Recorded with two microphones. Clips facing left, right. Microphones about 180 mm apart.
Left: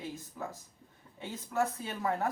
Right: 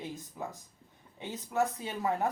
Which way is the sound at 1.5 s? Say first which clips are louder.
Right 1 dB; 20° right (ahead or behind).